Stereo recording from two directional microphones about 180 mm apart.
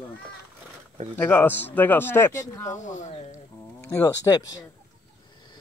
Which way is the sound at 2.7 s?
45° left (ahead or behind).